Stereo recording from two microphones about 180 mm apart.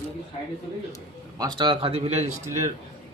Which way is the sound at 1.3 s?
25° right (ahead or behind).